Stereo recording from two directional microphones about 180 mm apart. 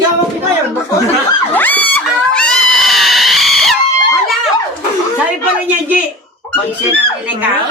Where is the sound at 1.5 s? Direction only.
10° left (ahead or behind).